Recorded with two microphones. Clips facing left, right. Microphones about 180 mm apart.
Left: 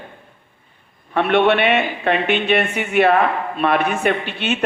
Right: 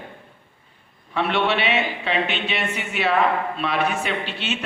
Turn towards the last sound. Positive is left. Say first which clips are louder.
# left 5 dB
turn(degrees=55)  # may be behind; listen again after turning